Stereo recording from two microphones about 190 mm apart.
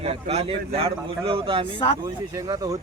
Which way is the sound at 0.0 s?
30° right (ahead or behind).